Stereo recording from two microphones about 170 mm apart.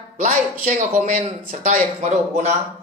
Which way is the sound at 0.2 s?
45° right (ahead or behind).